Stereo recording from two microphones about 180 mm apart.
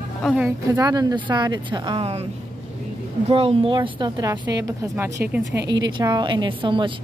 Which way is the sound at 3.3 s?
30° right (ahead or behind).